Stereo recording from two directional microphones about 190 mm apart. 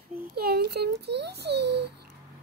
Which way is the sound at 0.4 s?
55° right (ahead or behind).